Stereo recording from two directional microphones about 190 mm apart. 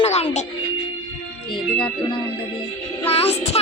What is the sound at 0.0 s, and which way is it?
Music, 35° left (ahead or behind).